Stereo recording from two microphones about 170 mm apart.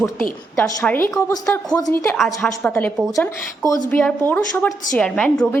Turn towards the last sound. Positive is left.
turn(degrees=5)  # may be behind; listen again after turning